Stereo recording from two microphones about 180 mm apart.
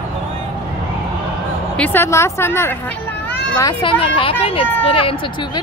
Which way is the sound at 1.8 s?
10° left (ahead or behind).